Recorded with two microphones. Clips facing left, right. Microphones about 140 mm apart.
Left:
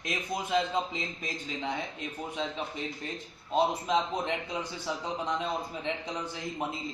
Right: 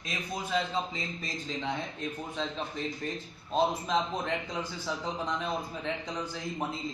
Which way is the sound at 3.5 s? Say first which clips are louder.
Left 1 dB; 15° left (ahead or behind).